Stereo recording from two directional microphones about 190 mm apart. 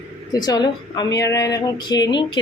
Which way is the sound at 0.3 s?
20° left (ahead or behind).